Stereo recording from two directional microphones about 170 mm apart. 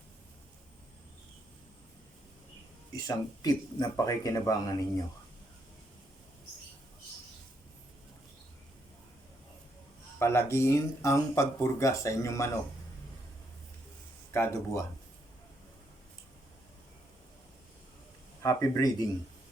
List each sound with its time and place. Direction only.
2.9 s speech: 20° left (ahead or behind)
10.2 s speech: 15° left (ahead or behind)
14.3 s speech: 15° left (ahead or behind)
18.4 s speech: 20° left (ahead or behind)